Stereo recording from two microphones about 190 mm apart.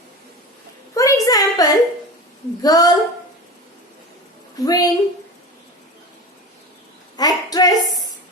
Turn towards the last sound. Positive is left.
turn(degrees=20)  # may be behind; listen again after turning